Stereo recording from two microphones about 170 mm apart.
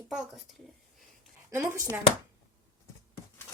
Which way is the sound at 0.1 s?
Centre (ahead or behind).